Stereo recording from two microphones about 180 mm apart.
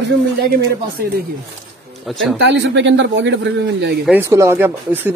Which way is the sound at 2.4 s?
70° right (ahead or behind).